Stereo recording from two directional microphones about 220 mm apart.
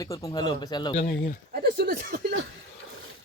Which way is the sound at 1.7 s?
45° right (ahead or behind).